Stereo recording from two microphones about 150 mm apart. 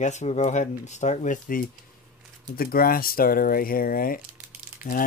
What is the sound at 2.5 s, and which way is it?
Speech, 75° left (ahead or behind).